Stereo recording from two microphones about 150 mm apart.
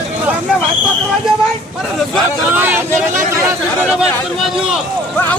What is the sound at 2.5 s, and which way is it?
Vehicle, 10° right (ahead or behind).